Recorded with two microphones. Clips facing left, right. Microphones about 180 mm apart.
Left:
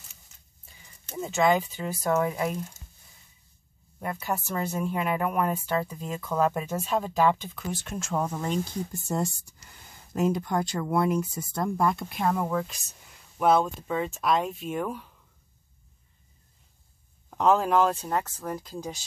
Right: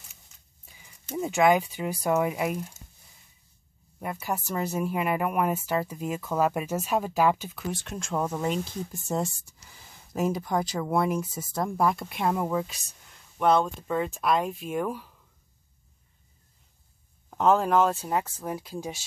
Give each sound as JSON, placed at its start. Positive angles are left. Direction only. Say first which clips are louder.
{"t": 1.0, "sound": "speech", "louder": "right 2 dB", "side_deg": -15}
{"t": 4.0, "sound": "speech", "louder": "left 1 dB", "side_deg": -5}
{"t": 13.4, "sound": "speech", "louder": "even", "side_deg": 5}
{"t": 17.3, "sound": "speech", "louder": "even", "side_deg": 0}